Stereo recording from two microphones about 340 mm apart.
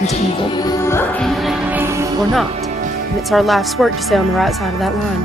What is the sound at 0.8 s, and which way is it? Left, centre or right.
Music, centre.